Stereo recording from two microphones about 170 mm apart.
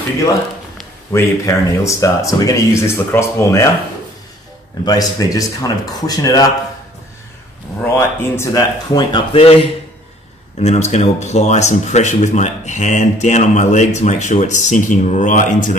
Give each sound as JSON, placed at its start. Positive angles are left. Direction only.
{"t": 1.1, "sound": "speech", "side_deg": 15}
{"t": 4.8, "sound": "speech", "side_deg": 20}
{"t": 7.8, "sound": "speech", "side_deg": 15}